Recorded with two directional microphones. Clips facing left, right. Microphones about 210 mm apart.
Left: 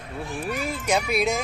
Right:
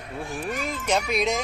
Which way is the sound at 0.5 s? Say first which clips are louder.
Left 1 dB; 10° left (ahead or behind).